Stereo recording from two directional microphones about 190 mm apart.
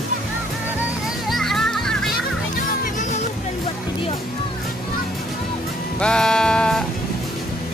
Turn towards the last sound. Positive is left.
turn(degrees=5)  # may be behind; listen again after turning